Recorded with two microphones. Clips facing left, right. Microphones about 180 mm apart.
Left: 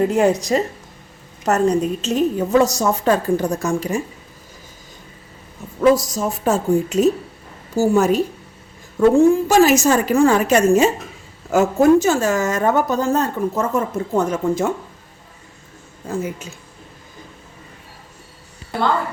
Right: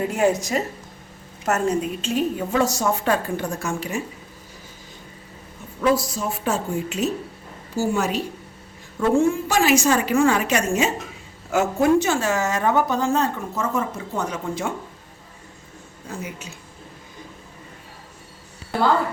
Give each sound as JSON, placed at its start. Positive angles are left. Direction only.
{"t": 0.5, "sound": "a woman's voice", "side_deg": 35}
{"t": 5.8, "sound": "a woman's voice", "side_deg": 45}
{"t": 16.0, "sound": "a woman's voice", "side_deg": 45}